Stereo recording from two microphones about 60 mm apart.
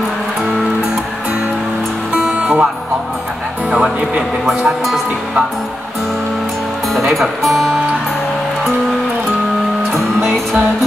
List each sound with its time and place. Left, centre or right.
2.3 s music: right
4.5 s speech: centre
6.9 s speech: centre
10.2 s music: centre